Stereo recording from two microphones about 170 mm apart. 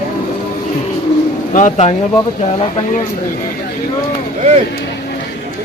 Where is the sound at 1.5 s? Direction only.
45° left (ahead or behind).